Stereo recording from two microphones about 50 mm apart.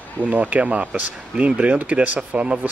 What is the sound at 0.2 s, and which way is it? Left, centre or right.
Speech, right.